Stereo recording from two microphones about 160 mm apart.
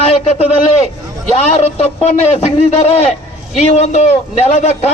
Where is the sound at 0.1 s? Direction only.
35° left (ahead or behind).